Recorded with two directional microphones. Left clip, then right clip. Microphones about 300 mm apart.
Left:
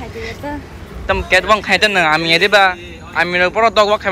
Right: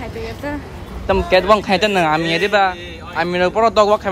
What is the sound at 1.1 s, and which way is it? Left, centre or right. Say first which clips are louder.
Speech: even; centre.